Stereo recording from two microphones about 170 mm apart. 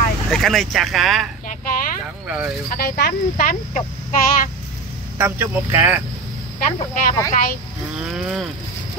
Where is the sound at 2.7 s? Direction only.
65° left (ahead or behind).